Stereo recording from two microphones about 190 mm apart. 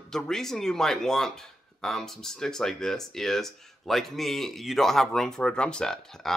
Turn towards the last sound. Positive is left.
turn(degrees=5)  # may be behind; listen again after turning